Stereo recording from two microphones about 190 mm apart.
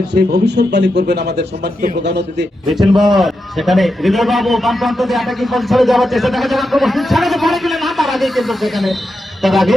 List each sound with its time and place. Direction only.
0.1 s speech: 60° right (ahead or behind)
2.6 s a man's voice: centre (ahead or behind)